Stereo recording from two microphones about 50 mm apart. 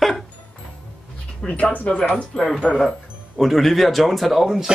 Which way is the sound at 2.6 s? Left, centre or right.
Left.